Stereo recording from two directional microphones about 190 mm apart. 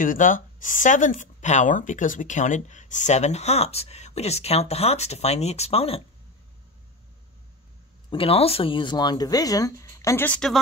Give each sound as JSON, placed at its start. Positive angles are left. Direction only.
{"t": 0.0, "sound": "speech", "side_deg": 45}
{"t": 8.1, "sound": "speech", "side_deg": 30}